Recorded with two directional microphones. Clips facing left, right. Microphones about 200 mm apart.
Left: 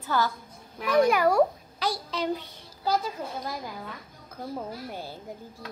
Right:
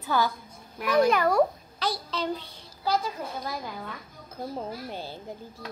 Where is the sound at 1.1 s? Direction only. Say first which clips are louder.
Left 1 dB; 10° left (ahead or behind).